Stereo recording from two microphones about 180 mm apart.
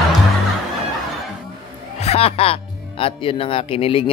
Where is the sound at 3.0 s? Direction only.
30° left (ahead or behind).